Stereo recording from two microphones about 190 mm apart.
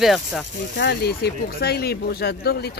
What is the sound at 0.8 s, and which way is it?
Speech, 55° left (ahead or behind).